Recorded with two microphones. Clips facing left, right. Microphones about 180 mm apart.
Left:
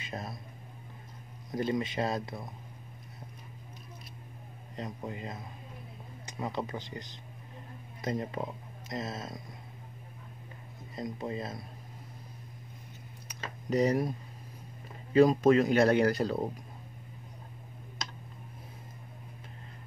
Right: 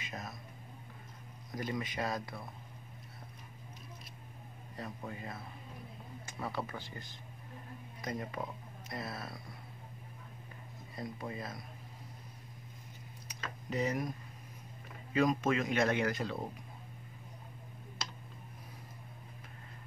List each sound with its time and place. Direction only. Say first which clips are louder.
0.0 s speech: left 5 dB; 30° left (ahead or behind)
1.5 s speech: left 7 dB; 25° left (ahead or behind)
4.7 s speech: left 5 dB; 20° left (ahead or behind)
11.0 s speech: left 6 dB; 25° left (ahead or behind)
13.7 s speech: left 8 dB; 35° left (ahead or behind)
15.1 s speech: left 8 dB; 35° left (ahead or behind)